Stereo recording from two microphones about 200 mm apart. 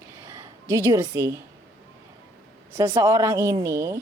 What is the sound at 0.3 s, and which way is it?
A woman's voice, 15° right (ahead or behind).